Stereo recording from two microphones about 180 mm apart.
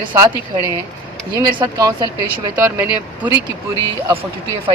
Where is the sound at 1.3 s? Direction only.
25° right (ahead or behind).